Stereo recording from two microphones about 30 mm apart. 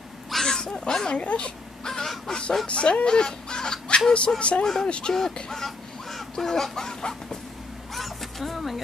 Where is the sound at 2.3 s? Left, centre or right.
Centre.